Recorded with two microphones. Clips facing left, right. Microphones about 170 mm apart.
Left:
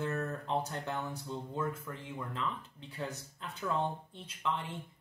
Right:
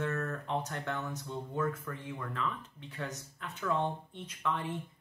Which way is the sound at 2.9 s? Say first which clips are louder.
Left 1 dB; 35° left (ahead or behind).